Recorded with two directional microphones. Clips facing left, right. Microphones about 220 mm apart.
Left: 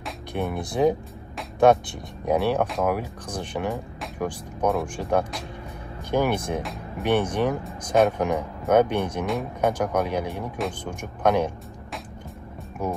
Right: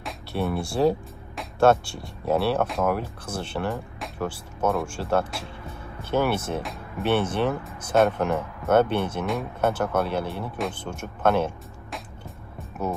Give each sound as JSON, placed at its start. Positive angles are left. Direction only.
{"t": 0.3, "sound": "speech", "side_deg": 15}
{"t": 2.6, "sound": "speech", "side_deg": 0}
{"t": 2.9, "sound": "speech", "side_deg": 15}
{"t": 9.2, "sound": "speech", "side_deg": 0}
{"t": 9.6, "sound": "speech", "side_deg": 15}
{"t": 12.8, "sound": "speech", "side_deg": 10}